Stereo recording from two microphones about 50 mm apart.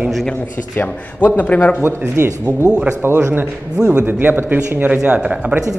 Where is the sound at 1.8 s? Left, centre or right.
Right.